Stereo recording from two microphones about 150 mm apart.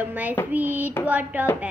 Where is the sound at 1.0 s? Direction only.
10° right (ahead or behind).